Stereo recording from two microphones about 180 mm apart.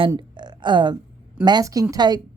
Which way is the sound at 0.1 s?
25° right (ahead or behind).